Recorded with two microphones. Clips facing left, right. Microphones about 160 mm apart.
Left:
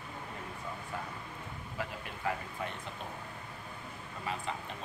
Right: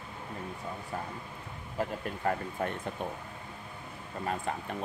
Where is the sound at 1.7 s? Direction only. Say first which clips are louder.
Right 8 dB; 45° right (ahead or behind).